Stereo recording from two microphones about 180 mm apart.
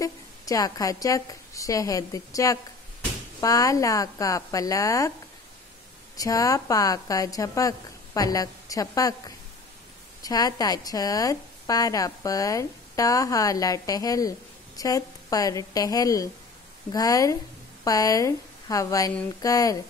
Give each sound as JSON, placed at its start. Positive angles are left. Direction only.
{"t": 0.0, "sound": "speech", "side_deg": 20}
{"t": 6.1, "sound": "speech", "side_deg": 20}
{"t": 10.2, "sound": "speech", "side_deg": 20}